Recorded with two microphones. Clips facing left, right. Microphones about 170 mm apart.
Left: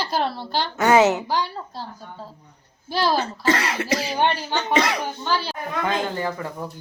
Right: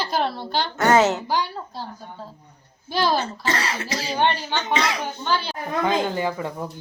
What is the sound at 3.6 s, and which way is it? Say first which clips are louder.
Speech: left 3 dB; 60° left (ahead or behind).